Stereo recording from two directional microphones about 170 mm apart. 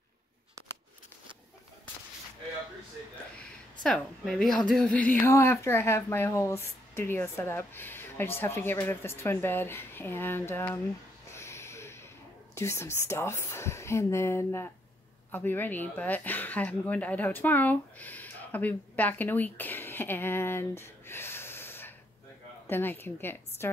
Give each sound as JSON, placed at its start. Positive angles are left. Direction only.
{"t": 3.8, "sound": "a woman's voice", "side_deg": 5}
{"t": 11.3, "sound": "snort", "side_deg": 15}
{"t": 12.5, "sound": "a woman's voice", "side_deg": 15}